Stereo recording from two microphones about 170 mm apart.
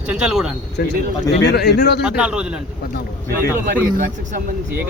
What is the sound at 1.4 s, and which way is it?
Speech, 70° left (ahead or behind).